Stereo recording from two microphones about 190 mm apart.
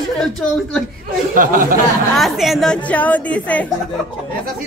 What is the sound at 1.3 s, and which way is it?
Speech, 45° right (ahead or behind).